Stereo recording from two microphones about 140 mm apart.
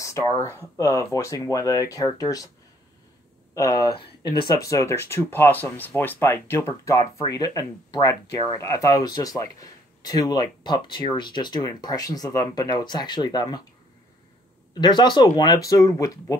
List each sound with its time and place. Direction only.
0.0 s speech: 20° left (ahead or behind)
3.5 s speech: 25° left (ahead or behind)
3.9 s speech: 35° left (ahead or behind)
4.5 s speech: 25° left (ahead or behind)
14.7 s speech: 30° left (ahead or behind)